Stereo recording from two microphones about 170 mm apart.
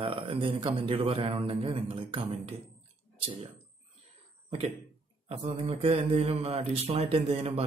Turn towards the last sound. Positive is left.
turn(degrees=-35)  # may be behind; listen again after turning